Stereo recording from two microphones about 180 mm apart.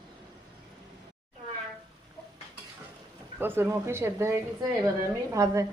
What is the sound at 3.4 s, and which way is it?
A woman's voice, 15° right (ahead or behind).